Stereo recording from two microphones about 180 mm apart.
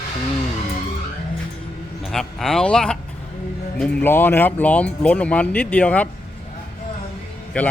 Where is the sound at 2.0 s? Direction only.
Centre (ahead or behind).